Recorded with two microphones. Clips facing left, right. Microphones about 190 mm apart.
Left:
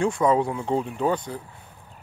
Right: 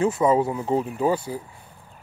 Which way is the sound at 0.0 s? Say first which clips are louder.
Right 1 dB; 5° right (ahead or behind).